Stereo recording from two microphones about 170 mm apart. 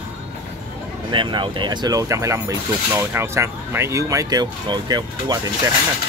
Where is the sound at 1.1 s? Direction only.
30° right (ahead or behind).